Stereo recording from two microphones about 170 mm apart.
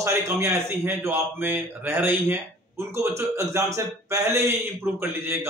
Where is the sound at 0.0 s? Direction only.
15° right (ahead or behind).